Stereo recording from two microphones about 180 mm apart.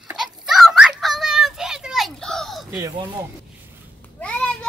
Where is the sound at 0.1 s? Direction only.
Centre (ahead or behind).